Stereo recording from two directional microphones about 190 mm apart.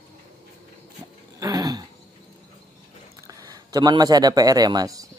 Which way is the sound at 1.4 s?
20° right (ahead or behind).